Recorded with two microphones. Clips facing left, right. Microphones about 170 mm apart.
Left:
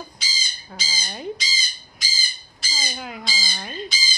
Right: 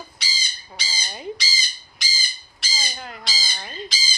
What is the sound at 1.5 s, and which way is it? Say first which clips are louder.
Bird: right 1 dB; 75° right (ahead or behind).